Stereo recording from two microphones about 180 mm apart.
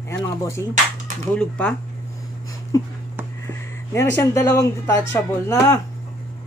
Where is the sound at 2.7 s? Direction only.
20° left (ahead or behind).